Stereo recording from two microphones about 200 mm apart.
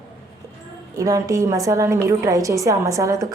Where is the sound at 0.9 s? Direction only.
15° right (ahead or behind).